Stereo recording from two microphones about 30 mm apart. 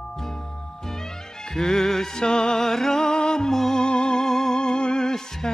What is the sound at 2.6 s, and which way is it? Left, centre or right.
Music, centre.